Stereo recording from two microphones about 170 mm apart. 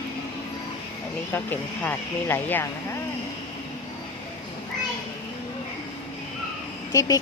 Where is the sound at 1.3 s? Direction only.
10° left (ahead or behind).